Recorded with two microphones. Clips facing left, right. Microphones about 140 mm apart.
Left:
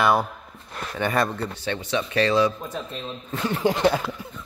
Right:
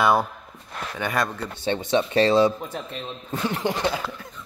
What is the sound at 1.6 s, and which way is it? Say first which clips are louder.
Speech: right 6 dB; 25° right (ahead or behind).